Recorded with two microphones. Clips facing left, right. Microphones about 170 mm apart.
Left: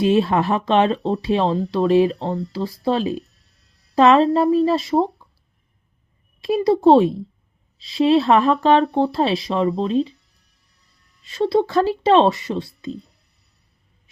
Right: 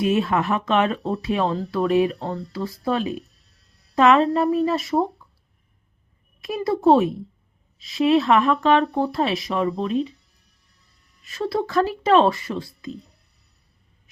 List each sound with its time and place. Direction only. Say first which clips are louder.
0.0 s speech: left 4 dB; 30° left (ahead or behind)
6.4 s speech: left 5 dB; 25° left (ahead or behind)
11.2 s speech: left 6 dB; 25° left (ahead or behind)